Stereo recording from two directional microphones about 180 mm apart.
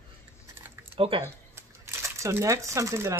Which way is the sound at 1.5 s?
15° right (ahead or behind).